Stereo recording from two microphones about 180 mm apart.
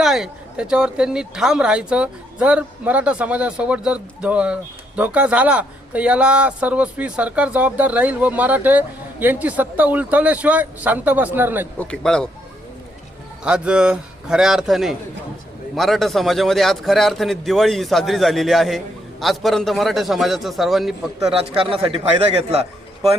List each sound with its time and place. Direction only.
0.0 s speech: centre (ahead or behind)
11.8 s a man's voice: 5° left (ahead or behind)
13.4 s a man's voice: 5° right (ahead or behind)
21.3 s speech: 30° right (ahead or behind)